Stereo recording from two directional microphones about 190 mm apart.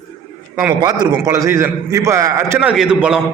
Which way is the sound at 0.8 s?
20° right (ahead or behind).